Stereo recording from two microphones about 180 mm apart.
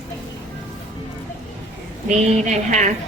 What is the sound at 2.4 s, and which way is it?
Speech, 40° right (ahead or behind).